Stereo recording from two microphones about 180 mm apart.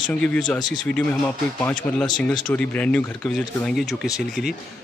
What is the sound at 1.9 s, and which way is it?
Speech, 20° left (ahead or behind).